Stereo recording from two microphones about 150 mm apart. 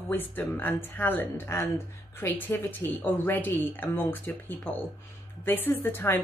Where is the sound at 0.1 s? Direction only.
10° left (ahead or behind).